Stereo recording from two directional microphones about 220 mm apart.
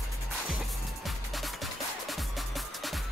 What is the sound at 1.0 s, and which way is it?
Music, centre (ahead or behind).